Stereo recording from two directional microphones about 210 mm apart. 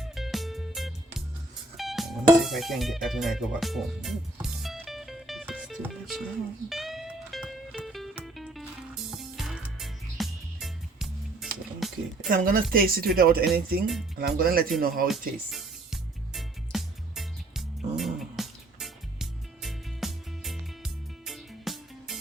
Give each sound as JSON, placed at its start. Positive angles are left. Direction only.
{"t": 0.0, "sound": "music", "side_deg": 0}
{"t": 12.3, "sound": "a woman's voice", "side_deg": -40}
{"t": 15.4, "sound": "music", "side_deg": 0}